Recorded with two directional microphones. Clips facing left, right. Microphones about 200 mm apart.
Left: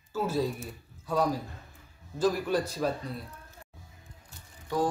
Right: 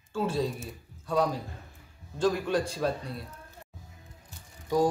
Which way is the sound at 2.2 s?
5° left (ahead or behind).